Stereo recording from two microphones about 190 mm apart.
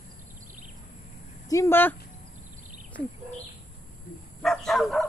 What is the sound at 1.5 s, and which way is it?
Speech, 15° left (ahead or behind).